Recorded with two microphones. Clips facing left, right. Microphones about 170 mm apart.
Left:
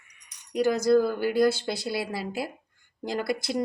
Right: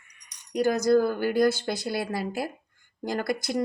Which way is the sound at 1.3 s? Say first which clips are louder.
Left 1 dB; 50° right (ahead or behind).